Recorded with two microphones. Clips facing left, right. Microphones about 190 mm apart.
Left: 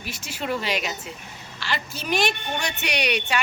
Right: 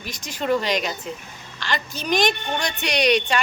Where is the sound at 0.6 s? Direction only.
5° left (ahead or behind).